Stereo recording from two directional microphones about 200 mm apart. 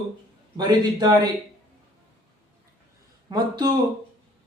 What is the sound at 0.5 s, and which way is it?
Speech, 20° right (ahead or behind).